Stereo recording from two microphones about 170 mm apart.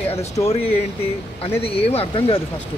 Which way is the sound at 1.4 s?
35° left (ahead or behind).